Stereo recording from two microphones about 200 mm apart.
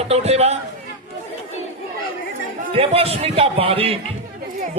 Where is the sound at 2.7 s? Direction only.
30° right (ahead or behind).